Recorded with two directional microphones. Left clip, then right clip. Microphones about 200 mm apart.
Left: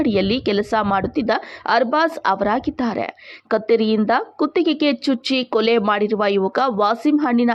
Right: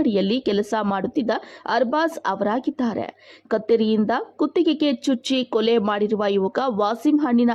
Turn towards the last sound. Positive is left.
turn(degrees=0)  # may be behind; listen again after turning